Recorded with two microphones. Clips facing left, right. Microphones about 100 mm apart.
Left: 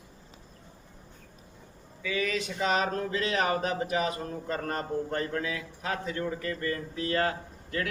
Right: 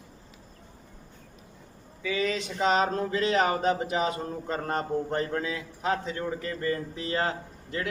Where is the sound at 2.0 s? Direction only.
25° right (ahead or behind).